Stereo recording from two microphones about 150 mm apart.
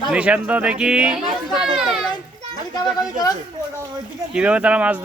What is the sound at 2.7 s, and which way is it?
Speech, 25° left (ahead or behind).